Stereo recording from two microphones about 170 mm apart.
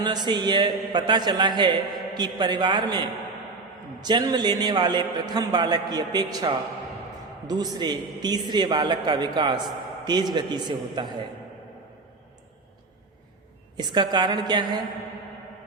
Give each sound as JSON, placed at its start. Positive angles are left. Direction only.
{"t": 0.0, "sound": "a man's voice", "side_deg": -25}
{"t": 13.7, "sound": "a man's voice", "side_deg": -25}